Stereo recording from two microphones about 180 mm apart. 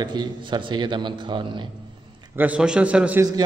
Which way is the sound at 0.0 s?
25° right (ahead or behind).